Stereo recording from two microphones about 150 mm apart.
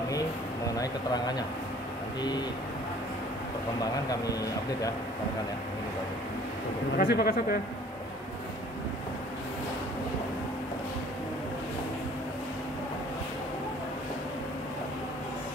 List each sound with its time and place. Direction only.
0.7 s speech: 25° left (ahead or behind)
7.0 s speech: 90° left